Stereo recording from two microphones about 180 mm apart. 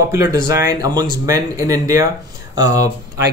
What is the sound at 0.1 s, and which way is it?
Speech, 15° right (ahead or behind).